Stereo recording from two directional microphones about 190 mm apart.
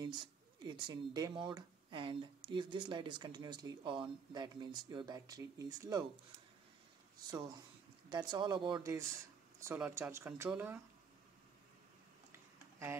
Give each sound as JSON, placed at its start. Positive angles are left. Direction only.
{"t": 0.7, "sound": "speech", "side_deg": -25}
{"t": 8.1, "sound": "speech", "side_deg": -20}
{"t": 12.3, "sound": "a sound", "side_deg": -15}